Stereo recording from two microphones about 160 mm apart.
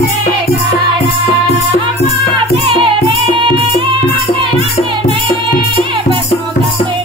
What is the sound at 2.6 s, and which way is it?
Music, 35° right (ahead or behind).